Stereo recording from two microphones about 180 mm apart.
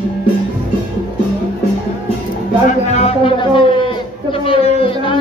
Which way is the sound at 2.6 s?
40° left (ahead or behind).